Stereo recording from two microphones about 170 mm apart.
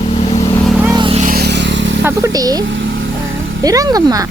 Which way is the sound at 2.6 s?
90° right.